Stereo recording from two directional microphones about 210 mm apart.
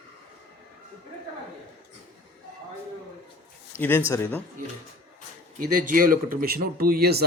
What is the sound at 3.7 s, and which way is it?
Speech, 10° left (ahead or behind).